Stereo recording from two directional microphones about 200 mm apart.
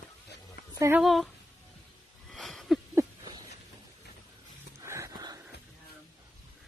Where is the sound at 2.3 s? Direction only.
Centre (ahead or behind).